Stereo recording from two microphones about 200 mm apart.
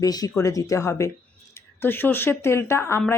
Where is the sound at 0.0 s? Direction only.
20° left (ahead or behind).